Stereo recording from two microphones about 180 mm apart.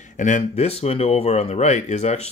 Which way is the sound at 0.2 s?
40° left (ahead or behind).